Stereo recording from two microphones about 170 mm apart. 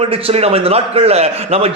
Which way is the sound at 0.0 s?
35° right (ahead or behind).